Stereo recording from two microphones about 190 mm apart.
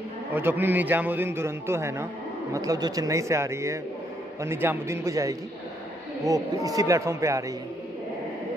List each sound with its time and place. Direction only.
0.3 s a man's voice: 10° right (ahead or behind)